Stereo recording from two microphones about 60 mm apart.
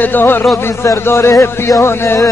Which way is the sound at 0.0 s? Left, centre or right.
Left.